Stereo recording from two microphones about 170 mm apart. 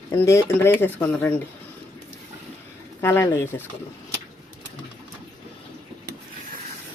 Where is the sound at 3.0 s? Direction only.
15° left (ahead or behind).